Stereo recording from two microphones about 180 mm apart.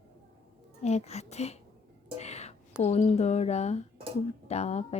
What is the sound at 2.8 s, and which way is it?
Speech, 35° left (ahead or behind).